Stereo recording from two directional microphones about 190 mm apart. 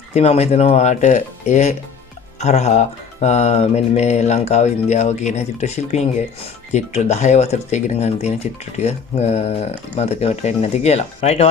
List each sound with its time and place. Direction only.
0.1 s speech: 35° left (ahead or behind)